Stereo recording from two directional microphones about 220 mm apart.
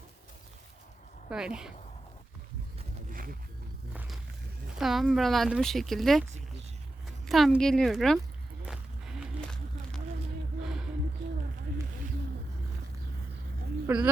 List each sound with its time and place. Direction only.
1.3 s speech: 5° right (ahead or behind)
3.1 s wild animals: 40° right (ahead or behind)
4.8 s speech: centre (ahead or behind)
7.3 s speech: centre (ahead or behind)
8.6 s a sound: centre (ahead or behind)
13.8 s speech: 5° right (ahead or behind)